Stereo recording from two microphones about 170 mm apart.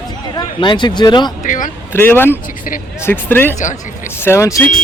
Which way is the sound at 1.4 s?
50° left (ahead or behind).